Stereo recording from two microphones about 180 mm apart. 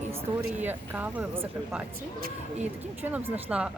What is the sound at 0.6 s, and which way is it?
Speech, 10° right (ahead or behind).